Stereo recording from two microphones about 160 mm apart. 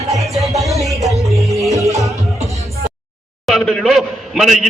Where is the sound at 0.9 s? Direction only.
20° right (ahead or behind).